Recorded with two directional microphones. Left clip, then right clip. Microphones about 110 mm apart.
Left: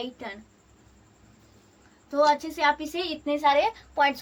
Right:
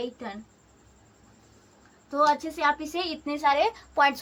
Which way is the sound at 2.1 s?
10° right (ahead or behind).